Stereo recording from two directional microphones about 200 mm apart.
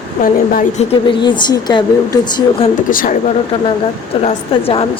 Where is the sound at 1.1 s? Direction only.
25° left (ahead or behind).